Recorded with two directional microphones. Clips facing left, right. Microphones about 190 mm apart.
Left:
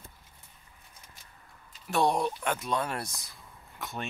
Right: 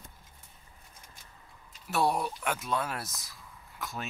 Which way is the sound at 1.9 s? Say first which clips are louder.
Left 2 dB; 5° right (ahead or behind).